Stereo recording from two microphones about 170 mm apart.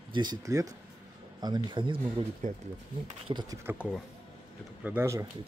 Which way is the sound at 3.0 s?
35° right (ahead or behind).